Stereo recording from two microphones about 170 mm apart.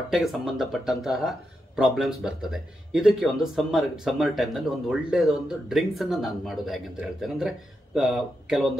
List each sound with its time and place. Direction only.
0.1 s speech: centre (ahead or behind)